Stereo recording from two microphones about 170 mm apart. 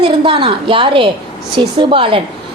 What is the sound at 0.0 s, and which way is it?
A woman's voice, 30° right (ahead or behind).